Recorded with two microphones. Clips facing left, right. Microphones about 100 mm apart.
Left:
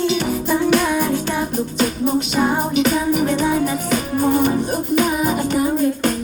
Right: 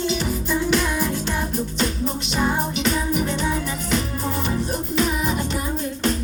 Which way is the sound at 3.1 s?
50° left (ahead or behind).